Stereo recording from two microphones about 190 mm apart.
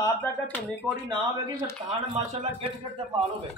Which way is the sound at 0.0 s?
10° left (ahead or behind).